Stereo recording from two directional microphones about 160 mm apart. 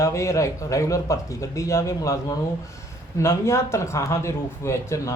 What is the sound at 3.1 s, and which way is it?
Speech, 15° left (ahead or behind).